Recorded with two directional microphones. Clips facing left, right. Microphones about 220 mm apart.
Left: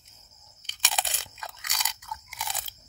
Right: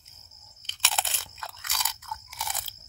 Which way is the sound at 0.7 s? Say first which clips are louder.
Even; 15° left (ahead or behind).